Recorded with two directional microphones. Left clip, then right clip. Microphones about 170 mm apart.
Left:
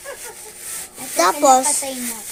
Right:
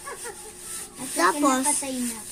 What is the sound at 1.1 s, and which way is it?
Speech, 15° left (ahead or behind).